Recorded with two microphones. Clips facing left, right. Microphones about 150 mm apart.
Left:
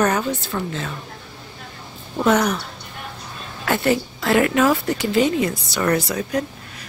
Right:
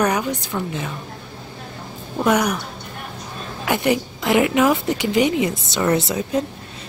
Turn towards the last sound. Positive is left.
turn(degrees=-20)  # may be behind; listen again after turning